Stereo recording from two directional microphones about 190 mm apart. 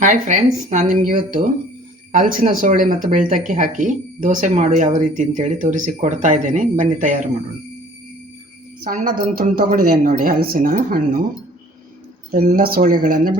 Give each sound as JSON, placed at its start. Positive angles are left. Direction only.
{"t": 0.0, "sound": "speech", "side_deg": -40}
{"t": 8.8, "sound": "speech", "side_deg": -45}
{"t": 12.3, "sound": "speech", "side_deg": -45}